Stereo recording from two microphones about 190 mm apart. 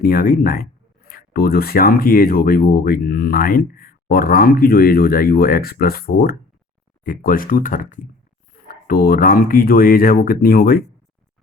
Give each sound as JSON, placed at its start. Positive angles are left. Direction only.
{"t": 0.0, "sound": "speech", "side_deg": 50}